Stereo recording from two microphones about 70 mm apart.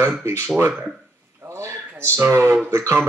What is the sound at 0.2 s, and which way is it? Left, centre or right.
Speech, right.